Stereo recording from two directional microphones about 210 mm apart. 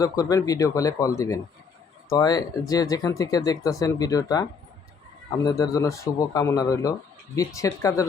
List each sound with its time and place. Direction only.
0.0 s speech: 15° left (ahead or behind)